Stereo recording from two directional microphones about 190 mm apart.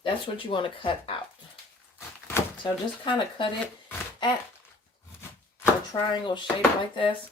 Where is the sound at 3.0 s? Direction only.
25° left (ahead or behind).